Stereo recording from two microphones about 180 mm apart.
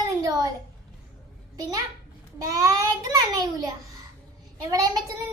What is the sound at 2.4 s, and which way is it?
A child's voice, 20° right (ahead or behind).